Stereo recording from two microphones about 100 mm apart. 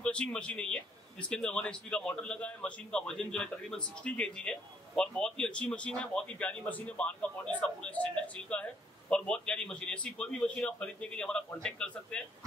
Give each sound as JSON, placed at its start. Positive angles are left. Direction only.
{"t": 0.0, "sound": "a man's voice", "side_deg": 10}